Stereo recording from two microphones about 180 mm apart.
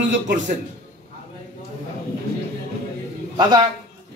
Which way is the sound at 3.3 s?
20° right (ahead or behind).